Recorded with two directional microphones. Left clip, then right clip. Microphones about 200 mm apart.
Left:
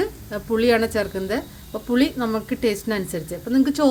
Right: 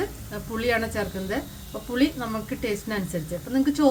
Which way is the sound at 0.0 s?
40° left (ahead or behind).